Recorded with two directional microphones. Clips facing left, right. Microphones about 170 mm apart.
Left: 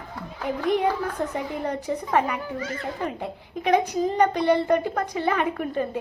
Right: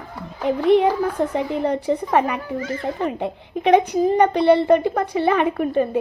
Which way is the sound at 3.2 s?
25° right (ahead or behind).